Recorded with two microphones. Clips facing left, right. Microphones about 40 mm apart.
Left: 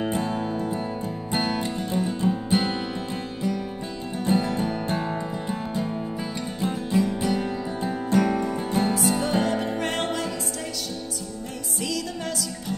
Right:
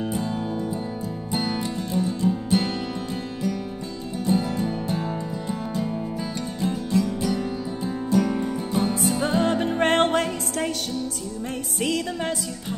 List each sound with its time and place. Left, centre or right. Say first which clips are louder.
1.3 s music: left 1 dB; left
4.3 s music: even; left
5.8 s music: right 1 dB; centre
8.1 s music: even; left
9.4 s music: right 3 dB; right
11.8 s music: right 4 dB; right